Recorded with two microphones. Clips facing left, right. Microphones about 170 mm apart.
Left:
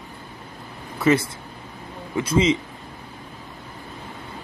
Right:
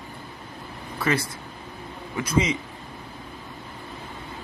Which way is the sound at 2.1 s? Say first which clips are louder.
Left 4 dB; 25° left (ahead or behind).